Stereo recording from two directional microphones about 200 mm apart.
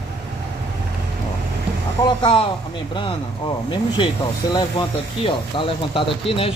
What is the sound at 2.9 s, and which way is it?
Speech, 25° left (ahead or behind).